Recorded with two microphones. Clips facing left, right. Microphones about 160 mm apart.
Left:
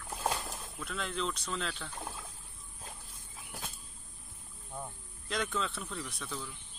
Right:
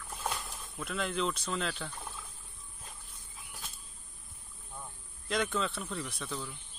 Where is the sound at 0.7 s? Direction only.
5° right (ahead or behind).